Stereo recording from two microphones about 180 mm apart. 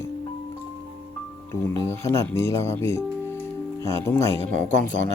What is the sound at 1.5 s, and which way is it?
Speech, 15° left (ahead or behind).